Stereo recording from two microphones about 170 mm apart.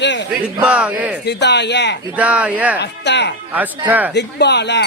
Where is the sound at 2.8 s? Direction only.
90° left.